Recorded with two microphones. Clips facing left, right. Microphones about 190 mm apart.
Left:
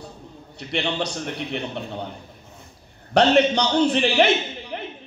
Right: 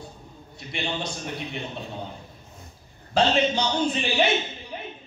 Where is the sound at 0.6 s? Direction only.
70° left (ahead or behind).